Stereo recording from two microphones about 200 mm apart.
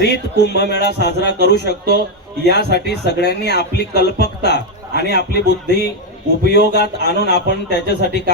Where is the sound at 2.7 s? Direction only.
55° left (ahead or behind).